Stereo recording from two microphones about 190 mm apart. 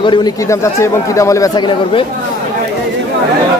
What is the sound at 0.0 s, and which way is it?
A man's voice, 25° left (ahead or behind).